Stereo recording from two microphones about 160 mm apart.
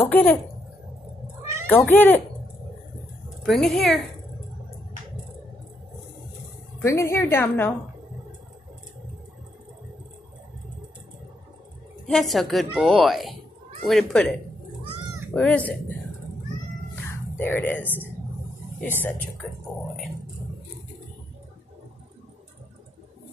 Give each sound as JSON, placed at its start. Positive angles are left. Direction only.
{"t": 0.1, "sound": "a woman's voice", "side_deg": 10}
{"t": 1.7, "sound": "a woman's voice", "side_deg": 10}
{"t": 3.4, "sound": "a woman's voice", "side_deg": 0}
{"t": 6.8, "sound": "a woman's voice", "side_deg": 15}
{"t": 12.1, "sound": "a woman's voice", "side_deg": 0}
{"t": 15.3, "sound": "a woman's voice", "side_deg": 10}
{"t": 17.1, "sound": "a sound", "side_deg": 15}
{"t": 19.4, "sound": "a woman's voice", "side_deg": -5}